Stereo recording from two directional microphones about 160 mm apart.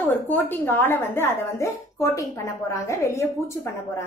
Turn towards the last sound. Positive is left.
turn(degrees=20)  # may be behind; listen again after turning